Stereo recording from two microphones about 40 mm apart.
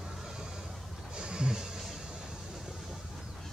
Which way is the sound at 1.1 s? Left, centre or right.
Right.